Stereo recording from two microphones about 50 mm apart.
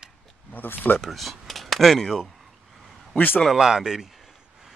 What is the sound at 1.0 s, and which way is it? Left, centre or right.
Speech, centre.